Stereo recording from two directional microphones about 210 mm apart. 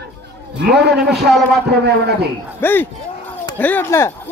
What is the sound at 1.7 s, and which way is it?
Speech, 50° right (ahead or behind).